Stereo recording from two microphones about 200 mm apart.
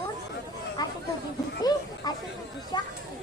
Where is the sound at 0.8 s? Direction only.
20° left (ahead or behind).